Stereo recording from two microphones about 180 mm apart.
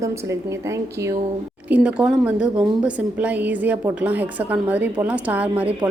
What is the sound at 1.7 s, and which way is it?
A woman's voice, 5° right (ahead or behind).